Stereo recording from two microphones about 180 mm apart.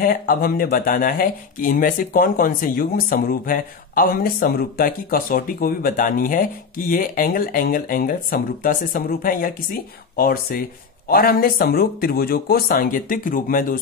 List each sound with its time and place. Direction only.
0.0 s speech: 55° left (ahead or behind)